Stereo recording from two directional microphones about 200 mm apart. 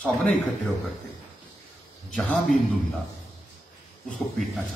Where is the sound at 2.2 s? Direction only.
Centre (ahead or behind).